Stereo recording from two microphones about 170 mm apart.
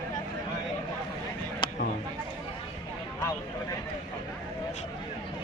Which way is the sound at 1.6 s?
30° left (ahead or behind).